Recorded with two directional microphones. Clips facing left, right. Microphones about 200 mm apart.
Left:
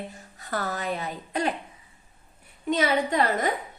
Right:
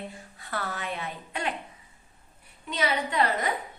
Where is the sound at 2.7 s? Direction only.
45° left (ahead or behind).